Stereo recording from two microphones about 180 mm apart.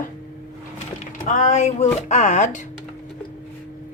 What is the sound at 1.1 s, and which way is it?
Speech, 45° left (ahead or behind).